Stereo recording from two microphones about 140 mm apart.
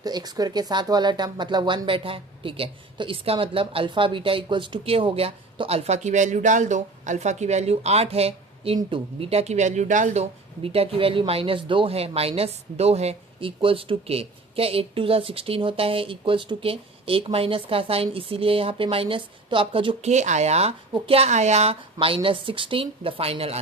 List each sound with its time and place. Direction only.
0.0 s speech: 30° right (ahead or behind)
20.1 s speech: 55° right (ahead or behind)